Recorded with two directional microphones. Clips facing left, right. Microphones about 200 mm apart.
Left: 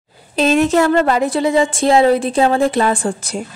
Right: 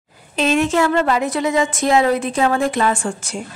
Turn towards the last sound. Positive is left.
turn(degrees=35)  # may be behind; listen again after turning